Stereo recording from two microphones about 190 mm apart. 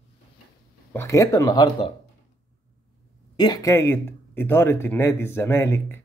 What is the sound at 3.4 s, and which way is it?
Speech, 20° left (ahead or behind).